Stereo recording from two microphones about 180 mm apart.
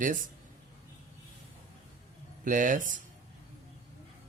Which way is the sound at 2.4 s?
45° right (ahead or behind).